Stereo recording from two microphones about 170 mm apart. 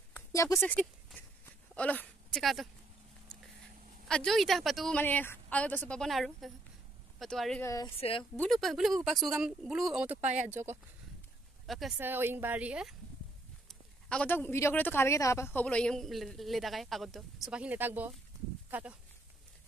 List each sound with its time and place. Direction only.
0.1 s a sound: 20° left (ahead or behind)
0.6 s speech: 10° left (ahead or behind)
4.1 s speech: 5° left (ahead or behind)
7.6 s speech: 20° left (ahead or behind)
8.0 s speech: 30° left (ahead or behind)
8.4 s speech: centre (ahead or behind)
10.2 s speech: 45° right (ahead or behind)
10.5 s a woman's voice: 15° right (ahead or behind)
11.6 s speech: centre (ahead or behind)
12.0 s a woman's voice: 10° right (ahead or behind)
13.7 s speech: 5° left (ahead or behind)